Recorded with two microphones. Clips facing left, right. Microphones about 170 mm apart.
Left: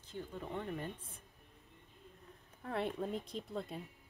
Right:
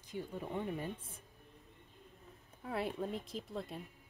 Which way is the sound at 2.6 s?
5° right (ahead or behind).